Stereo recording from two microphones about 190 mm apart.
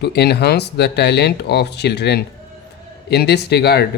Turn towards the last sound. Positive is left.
turn(degrees=60)  # may be behind; listen again after turning